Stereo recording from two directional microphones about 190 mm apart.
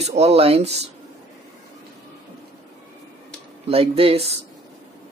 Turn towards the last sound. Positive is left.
turn(degrees=-30)  # may be behind; listen again after turning